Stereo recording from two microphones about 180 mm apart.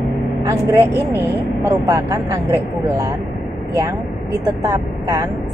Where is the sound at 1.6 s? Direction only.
15° right (ahead or behind).